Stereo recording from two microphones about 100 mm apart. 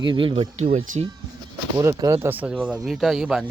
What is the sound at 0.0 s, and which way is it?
Speech, 55° right (ahead or behind).